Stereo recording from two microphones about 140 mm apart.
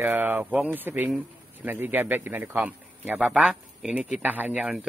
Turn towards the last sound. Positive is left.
turn(degrees=-10)  # may be behind; listen again after turning